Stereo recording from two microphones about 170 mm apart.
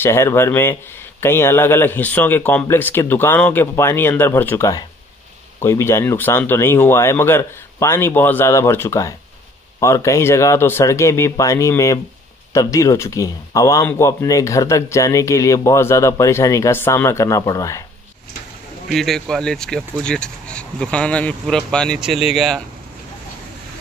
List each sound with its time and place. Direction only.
0.0 s speech: 15° left (ahead or behind)
18.9 s speech: centre (ahead or behind)